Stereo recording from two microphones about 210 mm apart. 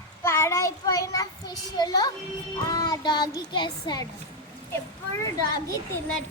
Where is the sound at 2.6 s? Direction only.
15° left (ahead or behind).